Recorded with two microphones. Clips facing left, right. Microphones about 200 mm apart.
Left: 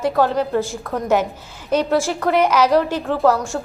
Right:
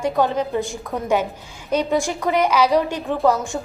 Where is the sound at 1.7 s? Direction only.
15° right (ahead or behind).